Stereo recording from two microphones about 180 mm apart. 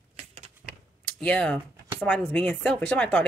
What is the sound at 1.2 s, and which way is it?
Speech, 5° left (ahead or behind).